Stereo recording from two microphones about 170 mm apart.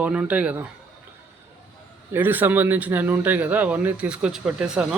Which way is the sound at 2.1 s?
10° right (ahead or behind).